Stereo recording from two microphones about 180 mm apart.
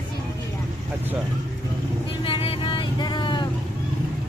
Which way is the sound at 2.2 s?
30° left (ahead or behind).